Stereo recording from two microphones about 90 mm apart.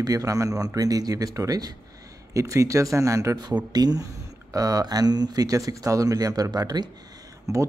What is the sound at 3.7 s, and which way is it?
Speech, 50° right (ahead or behind).